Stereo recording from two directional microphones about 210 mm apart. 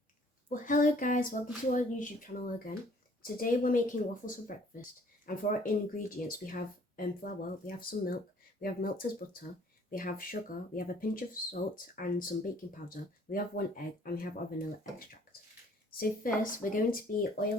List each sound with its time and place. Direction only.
0.5 s speech: 40° left (ahead or behind)